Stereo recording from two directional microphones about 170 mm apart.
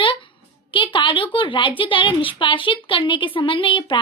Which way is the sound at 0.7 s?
30° left (ahead or behind).